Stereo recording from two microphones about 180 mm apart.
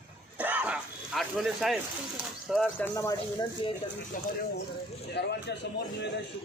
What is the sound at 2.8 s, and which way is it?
Speech, 15° left (ahead or behind).